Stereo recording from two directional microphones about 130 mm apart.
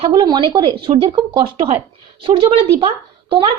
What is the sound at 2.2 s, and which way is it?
A woman's voice, 45° right (ahead or behind).